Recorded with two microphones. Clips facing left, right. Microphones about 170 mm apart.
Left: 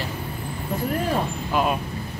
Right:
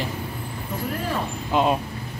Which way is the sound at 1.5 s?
25° right (ahead or behind).